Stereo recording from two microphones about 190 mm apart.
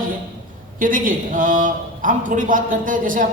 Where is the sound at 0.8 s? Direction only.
45° right (ahead or behind).